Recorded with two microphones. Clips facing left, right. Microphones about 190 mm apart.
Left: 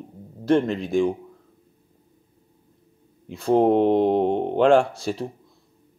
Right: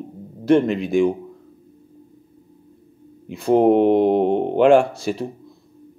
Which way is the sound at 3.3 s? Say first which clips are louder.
Right 3 dB; 15° right (ahead or behind).